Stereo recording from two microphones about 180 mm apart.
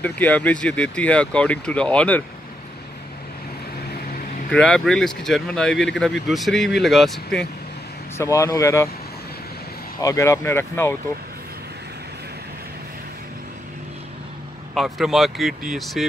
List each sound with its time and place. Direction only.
0.0 s speech: 10° left (ahead or behind)
4.5 s speech: 5° left (ahead or behind)
8.2 s speech: 15° left (ahead or behind)
10.0 s speech: 15° left (ahead or behind)
14.7 s speech: centre (ahead or behind)